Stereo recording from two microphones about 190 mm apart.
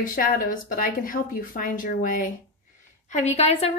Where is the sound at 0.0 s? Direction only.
45° left (ahead or behind).